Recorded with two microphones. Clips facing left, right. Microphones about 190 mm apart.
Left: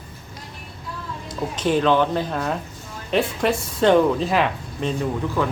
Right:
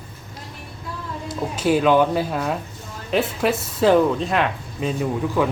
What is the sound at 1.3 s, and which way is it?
Speech, 5° right (ahead or behind).